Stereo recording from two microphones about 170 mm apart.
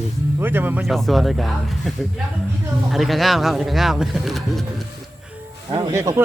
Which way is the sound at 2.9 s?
Centre (ahead or behind).